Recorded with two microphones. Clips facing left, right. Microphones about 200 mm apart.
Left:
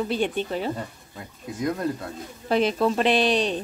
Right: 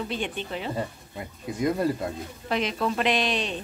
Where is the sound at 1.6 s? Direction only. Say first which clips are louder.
Right 2 dB; 5° right (ahead or behind).